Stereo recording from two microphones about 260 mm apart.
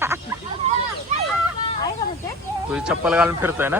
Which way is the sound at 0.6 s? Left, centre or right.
Right.